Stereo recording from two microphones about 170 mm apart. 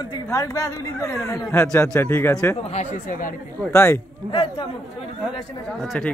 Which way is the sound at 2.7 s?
45° left (ahead or behind).